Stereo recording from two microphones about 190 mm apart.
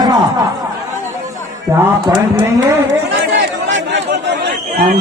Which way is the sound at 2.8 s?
70° right (ahead or behind).